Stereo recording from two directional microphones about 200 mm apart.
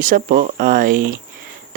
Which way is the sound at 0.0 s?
40° right (ahead or behind).